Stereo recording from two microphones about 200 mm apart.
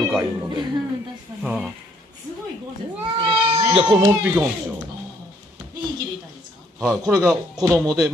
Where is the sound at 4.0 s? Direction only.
10° right (ahead or behind).